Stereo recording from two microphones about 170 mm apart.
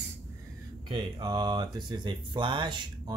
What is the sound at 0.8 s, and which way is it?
Speech, 25° right (ahead or behind).